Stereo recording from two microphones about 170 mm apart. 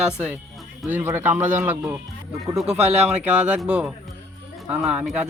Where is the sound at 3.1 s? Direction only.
10° right (ahead or behind).